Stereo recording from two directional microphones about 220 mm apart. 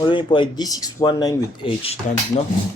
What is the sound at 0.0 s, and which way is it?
Speech, 20° left (ahead or behind).